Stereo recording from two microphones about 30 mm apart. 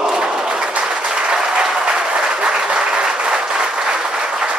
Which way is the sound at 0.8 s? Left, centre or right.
Right.